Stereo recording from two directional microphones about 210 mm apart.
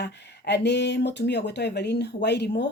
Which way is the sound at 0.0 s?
55° left (ahead or behind).